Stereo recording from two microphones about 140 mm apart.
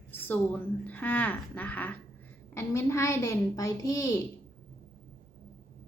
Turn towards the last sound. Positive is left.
turn(degrees=25)  # may be behind; listen again after turning